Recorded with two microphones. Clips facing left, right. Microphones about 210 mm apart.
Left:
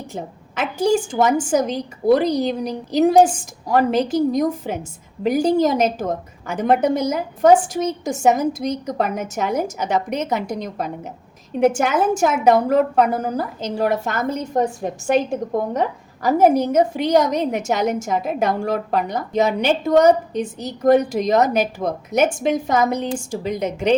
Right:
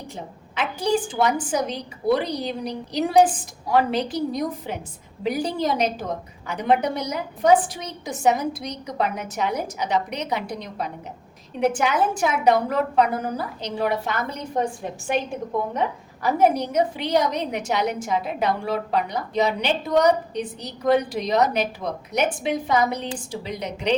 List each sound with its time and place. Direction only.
0.1 s a woman's voice: 45° left (ahead or behind)